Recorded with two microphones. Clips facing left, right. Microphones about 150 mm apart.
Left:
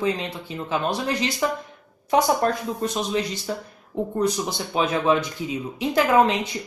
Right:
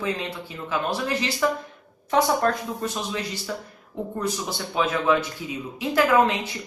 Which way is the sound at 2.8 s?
20° left (ahead or behind).